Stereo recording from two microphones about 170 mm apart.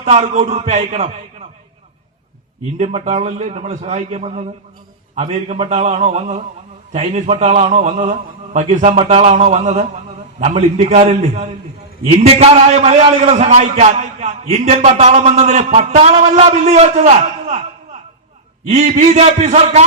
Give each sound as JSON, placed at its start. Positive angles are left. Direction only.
{"t": 0.0, "sound": "a man's voice", "side_deg": -40}
{"t": 2.7, "sound": "a man's voice", "side_deg": -40}
{"t": 18.7, "sound": "a man's voice", "side_deg": -40}